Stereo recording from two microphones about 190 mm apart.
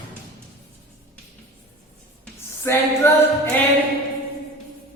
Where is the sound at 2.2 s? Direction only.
15° left (ahead or behind).